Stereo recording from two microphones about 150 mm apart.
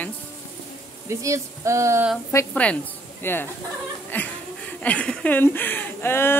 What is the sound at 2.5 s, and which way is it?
Speech, 10° left (ahead or behind).